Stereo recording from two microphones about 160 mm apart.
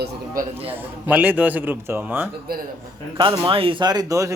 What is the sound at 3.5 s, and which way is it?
Speech, 35° right (ahead or behind).